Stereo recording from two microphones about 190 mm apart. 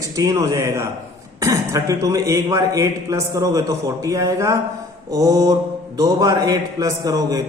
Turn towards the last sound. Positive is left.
turn(degrees=-20)  # may be behind; listen again after turning